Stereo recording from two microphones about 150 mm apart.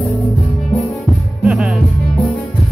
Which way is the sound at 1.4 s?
10° right (ahead or behind).